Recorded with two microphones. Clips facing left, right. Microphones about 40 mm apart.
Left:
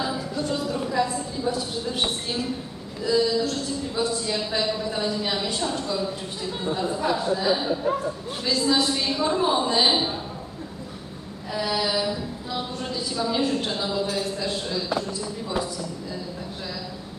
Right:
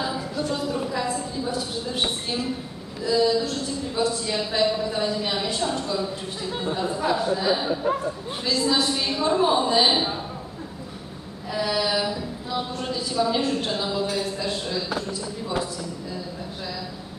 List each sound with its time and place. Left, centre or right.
0.0 s a sound: centre
1.5 s a woman's voice: centre
11.5 s a woman's voice: centre